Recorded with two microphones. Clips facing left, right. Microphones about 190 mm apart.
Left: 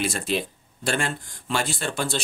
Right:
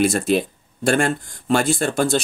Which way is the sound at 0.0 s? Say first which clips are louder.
Right 8 dB; 50° right (ahead or behind).